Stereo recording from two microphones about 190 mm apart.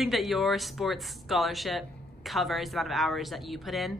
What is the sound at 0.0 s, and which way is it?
A woman's voice, centre (ahead or behind).